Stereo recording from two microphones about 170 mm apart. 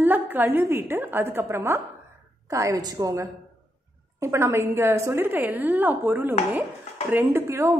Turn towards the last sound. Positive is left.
turn(degrees=-15)  # may be behind; listen again after turning